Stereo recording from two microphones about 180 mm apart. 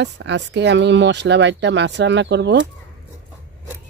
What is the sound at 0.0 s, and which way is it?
Speech, 75° right (ahead or behind).